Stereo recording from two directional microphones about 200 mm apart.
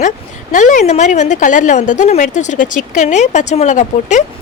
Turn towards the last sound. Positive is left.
turn(degrees=35)  # may be behind; listen again after turning